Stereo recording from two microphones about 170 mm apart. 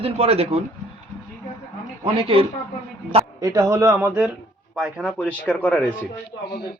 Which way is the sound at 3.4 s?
20° right (ahead or behind).